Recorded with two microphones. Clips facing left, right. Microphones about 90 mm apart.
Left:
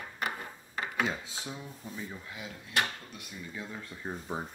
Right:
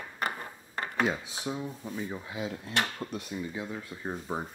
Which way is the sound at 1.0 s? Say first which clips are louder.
Right 4 dB; 15° right (ahead or behind).